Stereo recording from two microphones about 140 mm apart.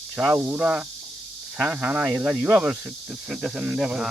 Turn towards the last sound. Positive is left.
turn(degrees=-5)  # may be behind; listen again after turning